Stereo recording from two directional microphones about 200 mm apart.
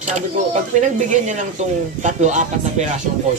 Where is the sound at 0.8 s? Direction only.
35° right (ahead or behind).